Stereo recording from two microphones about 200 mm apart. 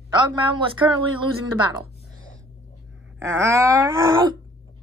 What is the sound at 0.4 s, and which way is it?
Speech, 25° right (ahead or behind).